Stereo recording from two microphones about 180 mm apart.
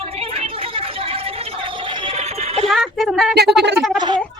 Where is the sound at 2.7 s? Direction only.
Centre (ahead or behind).